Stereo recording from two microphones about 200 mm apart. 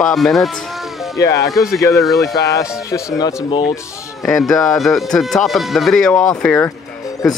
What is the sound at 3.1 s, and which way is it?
Speech, 20° left (ahead or behind).